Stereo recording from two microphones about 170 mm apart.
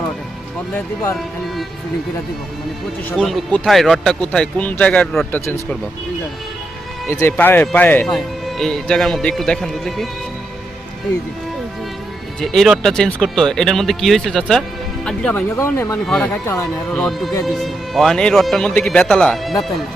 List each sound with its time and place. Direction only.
3.1 s a man's voice: centre (ahead or behind)
7.1 s a man's voice: 15° left (ahead or behind)
12.4 s a man's voice: centre (ahead or behind)
15.4 s speech: 15° left (ahead or behind)
16.0 s a man's voice: 5° left (ahead or behind)
16.3 s speech: 15° left (ahead or behind)
16.9 s a man's voice: centre (ahead or behind)